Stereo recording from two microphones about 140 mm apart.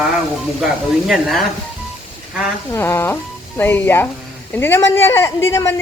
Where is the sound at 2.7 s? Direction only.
15° left (ahead or behind).